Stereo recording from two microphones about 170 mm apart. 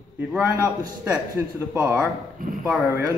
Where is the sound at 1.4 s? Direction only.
15° right (ahead or behind).